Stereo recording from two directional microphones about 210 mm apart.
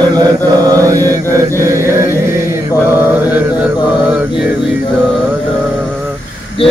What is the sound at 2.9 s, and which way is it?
Mantra, 10° right (ahead or behind).